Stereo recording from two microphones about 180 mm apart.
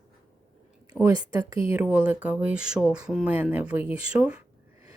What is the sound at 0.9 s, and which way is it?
Speech, 15° right (ahead or behind).